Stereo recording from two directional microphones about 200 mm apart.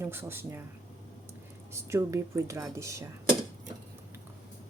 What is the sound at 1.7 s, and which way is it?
Speech, 15° right (ahead or behind).